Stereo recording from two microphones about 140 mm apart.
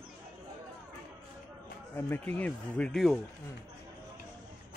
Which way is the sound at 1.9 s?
15° left (ahead or behind).